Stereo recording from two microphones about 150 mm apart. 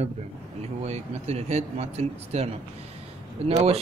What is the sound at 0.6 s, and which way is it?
A man's voice, 45° right (ahead or behind).